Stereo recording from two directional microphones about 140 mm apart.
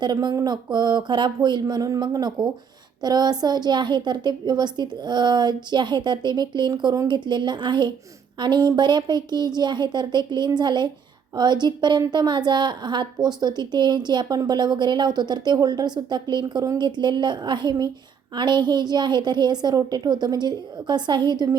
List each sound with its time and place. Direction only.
0.0 s a woman's voice: 30° right (ahead or behind)